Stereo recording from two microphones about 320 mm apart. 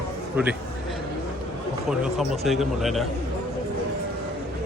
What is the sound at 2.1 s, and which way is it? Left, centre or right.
Speech, centre.